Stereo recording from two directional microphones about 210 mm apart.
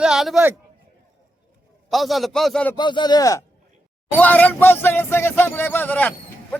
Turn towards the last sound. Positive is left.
turn(degrees=5)  # may be behind; listen again after turning